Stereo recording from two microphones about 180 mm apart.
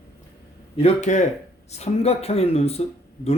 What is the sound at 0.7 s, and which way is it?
Speech, 35° left (ahead or behind).